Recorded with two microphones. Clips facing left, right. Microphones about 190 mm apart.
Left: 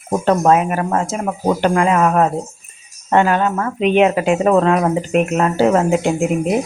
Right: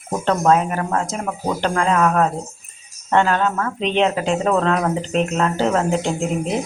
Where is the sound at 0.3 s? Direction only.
10° left (ahead or behind).